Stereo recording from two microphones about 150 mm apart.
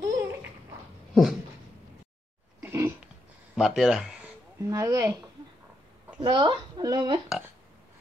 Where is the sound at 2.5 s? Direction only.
15° right (ahead or behind).